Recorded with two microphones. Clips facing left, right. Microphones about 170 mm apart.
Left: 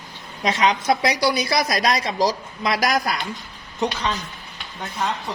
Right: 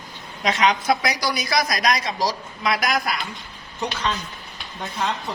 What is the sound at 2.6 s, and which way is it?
Speech, 40° left (ahead or behind).